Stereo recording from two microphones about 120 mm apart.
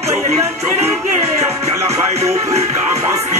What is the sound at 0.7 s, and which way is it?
Music, 20° right (ahead or behind).